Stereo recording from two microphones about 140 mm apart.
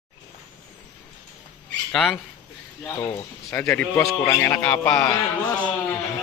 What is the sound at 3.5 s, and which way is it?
Speech, 15° left (ahead or behind).